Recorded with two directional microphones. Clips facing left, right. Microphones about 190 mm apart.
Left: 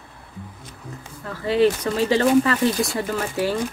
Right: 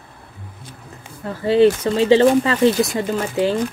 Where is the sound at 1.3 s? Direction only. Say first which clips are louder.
Right 5 dB; 25° right (ahead or behind).